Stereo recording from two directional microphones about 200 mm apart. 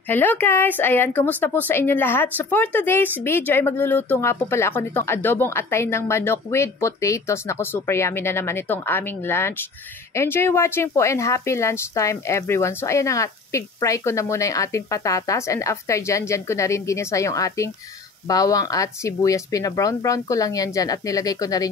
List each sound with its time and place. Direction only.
0.1 s a woman's voice: 10° left (ahead or behind)